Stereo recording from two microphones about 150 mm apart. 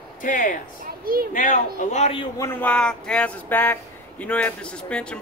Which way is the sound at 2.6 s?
5° left (ahead or behind).